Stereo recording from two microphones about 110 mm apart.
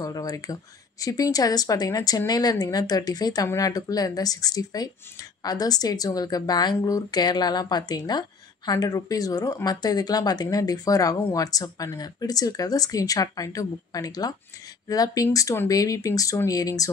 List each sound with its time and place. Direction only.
0.0 s a woman's voice: 35° left (ahead or behind)